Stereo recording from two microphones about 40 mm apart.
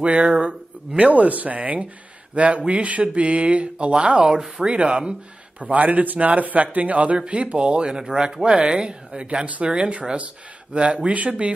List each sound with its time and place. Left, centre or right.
0.0 s speech: right
5.6 s speech: right